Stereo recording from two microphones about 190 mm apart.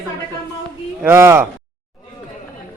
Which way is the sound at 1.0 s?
15° right (ahead or behind).